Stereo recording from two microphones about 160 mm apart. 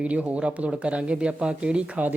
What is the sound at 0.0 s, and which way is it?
Speech, 10° right (ahead or behind).